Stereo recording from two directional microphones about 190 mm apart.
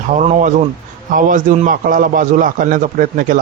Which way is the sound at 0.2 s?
40° right (ahead or behind).